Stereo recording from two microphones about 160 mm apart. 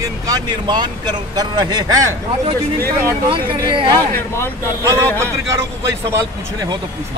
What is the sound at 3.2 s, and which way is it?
Speech, 30° right (ahead or behind).